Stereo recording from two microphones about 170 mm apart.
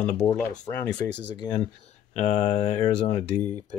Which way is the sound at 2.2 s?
40° left (ahead or behind).